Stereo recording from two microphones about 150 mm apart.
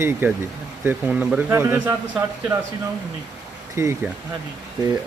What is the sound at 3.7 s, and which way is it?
Speech, 20° right (ahead or behind).